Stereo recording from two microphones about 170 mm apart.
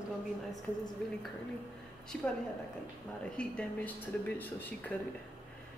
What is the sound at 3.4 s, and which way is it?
Speech, 5° left (ahead or behind).